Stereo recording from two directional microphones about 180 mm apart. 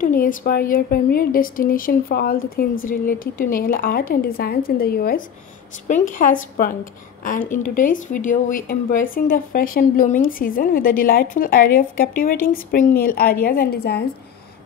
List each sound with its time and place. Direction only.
0.0 s a woman's voice: 50° left (ahead or behind)
5.9 s a woman's voice: 45° left (ahead or behind); by 14.0 s 60° left (ahead or behind)